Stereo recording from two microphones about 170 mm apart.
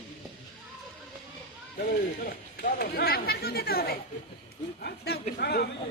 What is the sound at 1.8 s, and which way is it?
Speech, 60° left (ahead or behind).